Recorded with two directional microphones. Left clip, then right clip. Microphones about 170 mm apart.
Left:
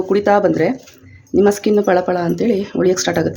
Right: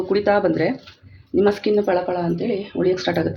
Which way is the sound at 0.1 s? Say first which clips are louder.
Left 4 dB; 30° left (ahead or behind).